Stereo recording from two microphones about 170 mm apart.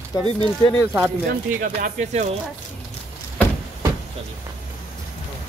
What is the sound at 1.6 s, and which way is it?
Speech, 50° right (ahead or behind).